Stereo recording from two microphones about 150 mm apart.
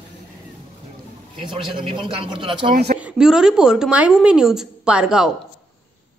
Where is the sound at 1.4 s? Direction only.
35° right (ahead or behind).